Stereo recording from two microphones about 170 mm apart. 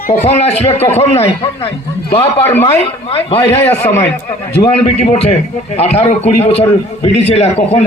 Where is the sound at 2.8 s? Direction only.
35° left (ahead or behind).